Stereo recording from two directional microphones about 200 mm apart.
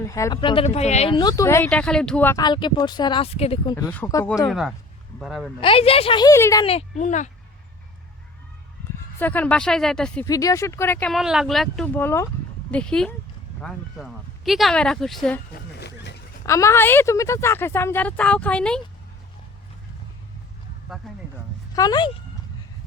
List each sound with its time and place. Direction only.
0.0 s speech: 15° left (ahead or behind); by 1.1 s 35° left (ahead or behind)
1.1 s speech: 20° left (ahead or behind)
3.8 s a woman's voice: 10° left (ahead or behind)
4.4 s speech: centre (ahead or behind)
5.5 s speech: 30° left (ahead or behind)
6.7 s a child's voice: 35° left (ahead or behind)
9.1 s speech: 10° left (ahead or behind)
10.2 s a woman's voice: 15° left (ahead or behind)
15.5 s speech: 55° left (ahead or behind)
16.5 s a woman's voice: 15° left (ahead or behind)
21.0 s speech: centre (ahead or behind)
21.8 s speech: 20° left (ahead or behind)